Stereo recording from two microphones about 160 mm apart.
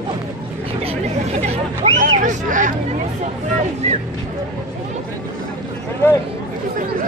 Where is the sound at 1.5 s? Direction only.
50° right (ahead or behind).